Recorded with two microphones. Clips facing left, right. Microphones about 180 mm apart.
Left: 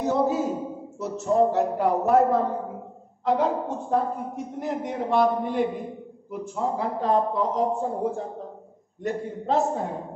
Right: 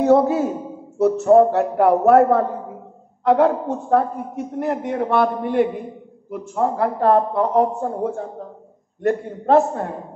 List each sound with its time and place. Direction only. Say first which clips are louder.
0.0 s speech: right 8 dB; 65° right (ahead or behind)